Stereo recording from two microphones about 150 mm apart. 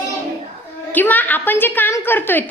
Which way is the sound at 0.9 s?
10° left (ahead or behind).